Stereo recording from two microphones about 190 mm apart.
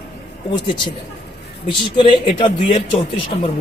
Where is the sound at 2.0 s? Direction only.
25° left (ahead or behind).